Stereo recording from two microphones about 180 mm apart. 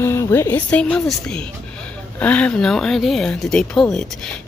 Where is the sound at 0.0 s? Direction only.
15° left (ahead or behind).